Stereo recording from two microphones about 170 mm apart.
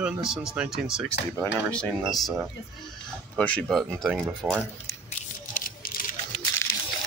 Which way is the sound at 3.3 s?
5° left (ahead or behind).